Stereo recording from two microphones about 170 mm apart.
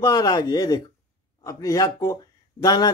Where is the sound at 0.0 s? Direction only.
20° left (ahead or behind).